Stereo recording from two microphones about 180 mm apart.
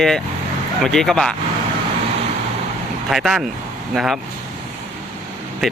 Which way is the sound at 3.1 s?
5° right (ahead or behind).